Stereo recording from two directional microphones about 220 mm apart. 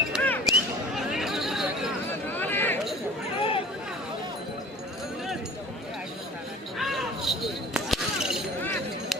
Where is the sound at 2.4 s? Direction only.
10° left (ahead or behind).